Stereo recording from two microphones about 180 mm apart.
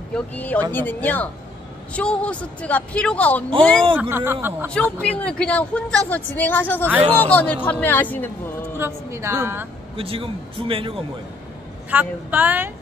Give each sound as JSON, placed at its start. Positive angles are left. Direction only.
{"t": 0.1, "sound": "a woman's voice", "side_deg": 10}
{"t": 3.9, "sound": "a woman's voice", "side_deg": -10}
{"t": 5.0, "sound": "a woman's voice", "side_deg": 5}
{"t": 8.7, "sound": "a woman's voice", "side_deg": -15}
{"t": 9.9, "sound": "a man's voice", "side_deg": -30}
{"t": 11.9, "sound": "a woman's voice", "side_deg": -10}